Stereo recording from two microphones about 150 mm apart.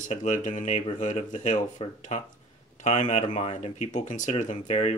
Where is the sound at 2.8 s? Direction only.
55° left (ahead or behind).